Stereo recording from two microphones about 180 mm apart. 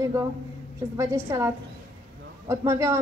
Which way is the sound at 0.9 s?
15° right (ahead or behind).